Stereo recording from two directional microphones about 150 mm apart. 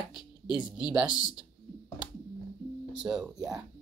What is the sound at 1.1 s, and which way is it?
Speech, 25° left (ahead or behind).